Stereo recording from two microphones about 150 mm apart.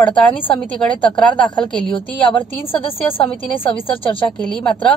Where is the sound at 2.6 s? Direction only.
35° left (ahead or behind).